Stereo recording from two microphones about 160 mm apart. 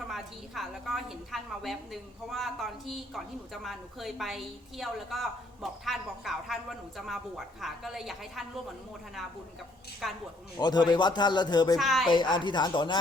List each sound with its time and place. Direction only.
0.1 s a woman's voice: centre (ahead or behind)
10.0 s a woman's voice: centre (ahead or behind)
10.6 s speech: 25° left (ahead or behind)
11.8 s a woman's voice: centre (ahead or behind)
12.0 s speech: 30° left (ahead or behind)